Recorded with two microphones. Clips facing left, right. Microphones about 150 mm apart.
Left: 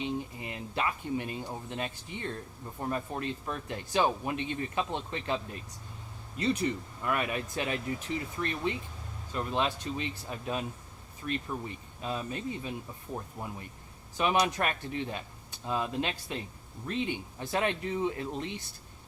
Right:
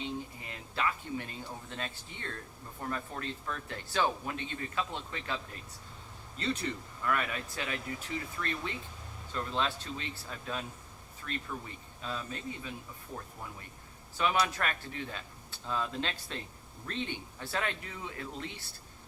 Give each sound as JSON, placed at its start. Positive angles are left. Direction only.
{"t": 0.0, "sound": "speech", "side_deg": 20}
{"t": 6.3, "sound": "speech", "side_deg": 15}